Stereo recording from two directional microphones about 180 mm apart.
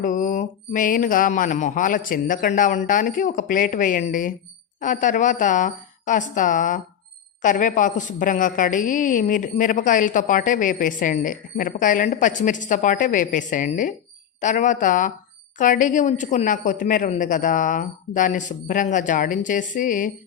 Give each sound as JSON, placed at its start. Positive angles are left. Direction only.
{"t": 0.0, "sound": "a woman's voice", "side_deg": 45}